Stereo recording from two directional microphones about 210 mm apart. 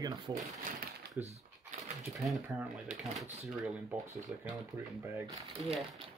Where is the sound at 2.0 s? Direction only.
Centre (ahead or behind).